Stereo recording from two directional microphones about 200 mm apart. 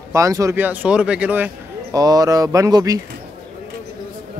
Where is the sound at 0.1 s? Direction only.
15° right (ahead or behind).